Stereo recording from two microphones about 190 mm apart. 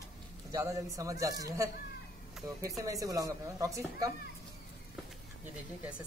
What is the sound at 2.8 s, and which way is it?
Speech, 15° right (ahead or behind).